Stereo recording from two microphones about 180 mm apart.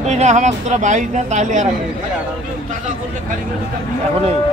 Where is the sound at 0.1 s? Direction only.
40° right (ahead or behind).